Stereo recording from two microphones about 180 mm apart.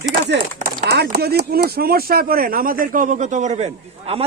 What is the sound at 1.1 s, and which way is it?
Speech, 60° right (ahead or behind).